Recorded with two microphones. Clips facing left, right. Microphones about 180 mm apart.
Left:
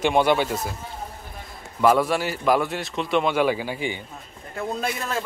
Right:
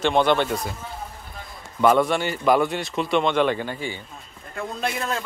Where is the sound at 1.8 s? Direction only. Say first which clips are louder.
Right 1 dB; 5° left (ahead or behind).